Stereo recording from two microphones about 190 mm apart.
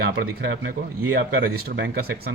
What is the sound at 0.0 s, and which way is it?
Speech, 65° right (ahead or behind).